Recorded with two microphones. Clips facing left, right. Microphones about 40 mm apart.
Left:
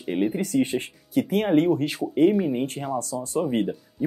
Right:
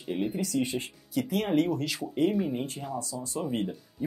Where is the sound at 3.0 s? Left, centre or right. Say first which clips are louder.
Left 8 dB; left.